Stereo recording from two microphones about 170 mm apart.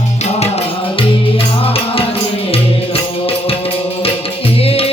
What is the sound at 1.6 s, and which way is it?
Music, 35° left (ahead or behind).